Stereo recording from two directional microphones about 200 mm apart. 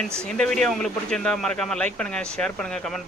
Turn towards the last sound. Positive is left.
turn(degrees=0)  # may be behind; listen again after turning